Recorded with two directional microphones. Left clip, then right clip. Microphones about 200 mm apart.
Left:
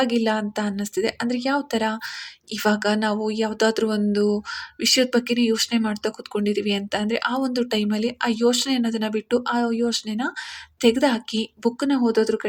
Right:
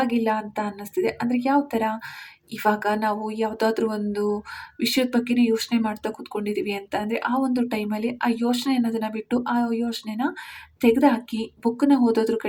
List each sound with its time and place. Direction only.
0.0 s speech: 45° left (ahead or behind)